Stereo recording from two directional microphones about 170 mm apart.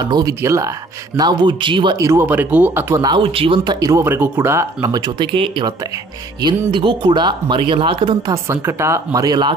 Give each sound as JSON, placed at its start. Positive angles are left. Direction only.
{"t": 0.0, "sound": "speech", "side_deg": -25}
{"t": 8.5, "sound": "speech", "side_deg": -15}